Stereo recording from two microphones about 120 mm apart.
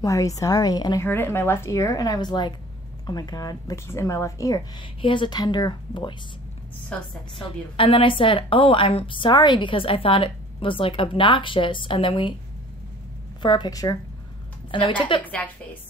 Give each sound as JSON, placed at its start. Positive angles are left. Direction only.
{"t": 0.0, "sound": "speech", "side_deg": 25}
{"t": 1.0, "sound": "speech", "side_deg": 20}
{"t": 4.7, "sound": "speech", "side_deg": 40}
{"t": 6.9, "sound": "a woman's voice", "side_deg": 10}
{"t": 7.4, "sound": "a woman's voice", "side_deg": 50}
{"t": 13.4, "sound": "speech", "side_deg": 40}
{"t": 14.7, "sound": "a woman's voice", "side_deg": 45}